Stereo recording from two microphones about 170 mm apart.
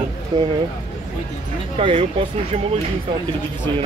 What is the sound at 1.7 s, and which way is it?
Speech, 35° right (ahead or behind).